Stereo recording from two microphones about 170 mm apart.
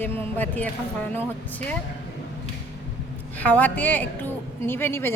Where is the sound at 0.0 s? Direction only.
10° left (ahead or behind).